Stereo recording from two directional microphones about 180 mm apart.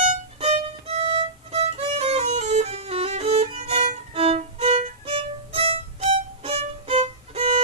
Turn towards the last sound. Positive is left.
turn(degrees=-35)  # may be behind; listen again after turning